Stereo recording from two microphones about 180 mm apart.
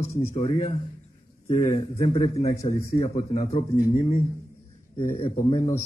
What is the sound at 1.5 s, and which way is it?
A man's voice, 45° left (ahead or behind).